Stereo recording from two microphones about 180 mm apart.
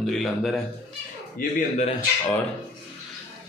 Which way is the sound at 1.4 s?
50° left (ahead or behind).